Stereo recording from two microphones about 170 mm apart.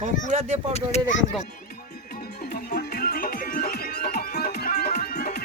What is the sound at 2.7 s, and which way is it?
Music, 60° left (ahead or behind).